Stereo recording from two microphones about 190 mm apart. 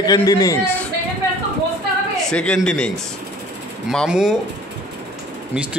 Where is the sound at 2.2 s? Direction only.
5° left (ahead or behind).